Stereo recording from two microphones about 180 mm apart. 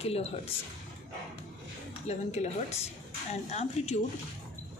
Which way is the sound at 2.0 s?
40° left (ahead or behind).